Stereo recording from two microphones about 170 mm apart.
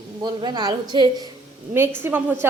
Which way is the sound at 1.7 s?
15° right (ahead or behind).